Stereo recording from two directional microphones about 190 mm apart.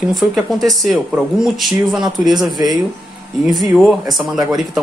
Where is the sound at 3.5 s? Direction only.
Centre (ahead or behind).